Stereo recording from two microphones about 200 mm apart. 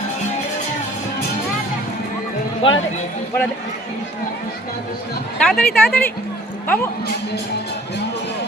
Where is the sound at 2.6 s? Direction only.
25° left (ahead or behind).